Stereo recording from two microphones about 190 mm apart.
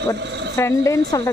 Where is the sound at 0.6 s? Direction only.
15° left (ahead or behind).